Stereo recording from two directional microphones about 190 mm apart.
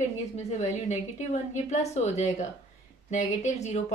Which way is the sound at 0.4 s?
35° left (ahead or behind).